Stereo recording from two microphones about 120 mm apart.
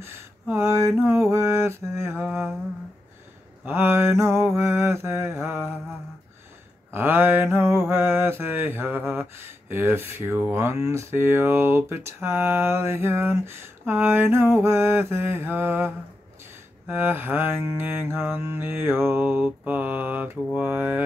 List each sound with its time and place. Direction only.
0.0 s mantra: 20° right (ahead or behind)
3.6 s mantra: 20° right (ahead or behind)
6.9 s mantra: 20° right (ahead or behind)